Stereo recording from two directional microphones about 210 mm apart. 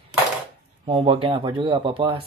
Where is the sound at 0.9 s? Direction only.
25° right (ahead or behind).